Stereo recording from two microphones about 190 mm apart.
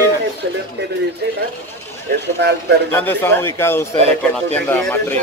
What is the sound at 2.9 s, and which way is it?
A man's voice, 10° left (ahead or behind).